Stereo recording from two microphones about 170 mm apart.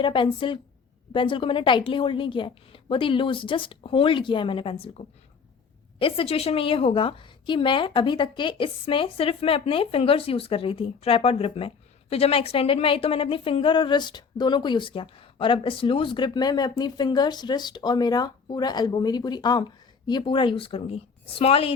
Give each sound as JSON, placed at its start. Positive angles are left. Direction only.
{"t": 0.0, "sound": "a woman's voice", "side_deg": 30}